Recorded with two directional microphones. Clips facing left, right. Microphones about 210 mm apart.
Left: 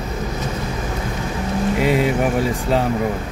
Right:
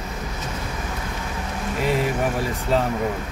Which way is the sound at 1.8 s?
15° left (ahead or behind).